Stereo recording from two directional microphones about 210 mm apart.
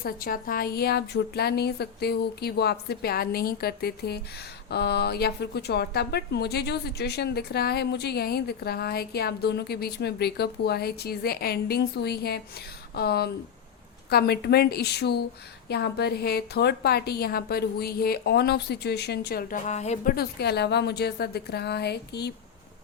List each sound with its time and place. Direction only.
0.0 s a woman's voice: 45° left (ahead or behind)
20.1 s a woman's voice: 50° left (ahead or behind)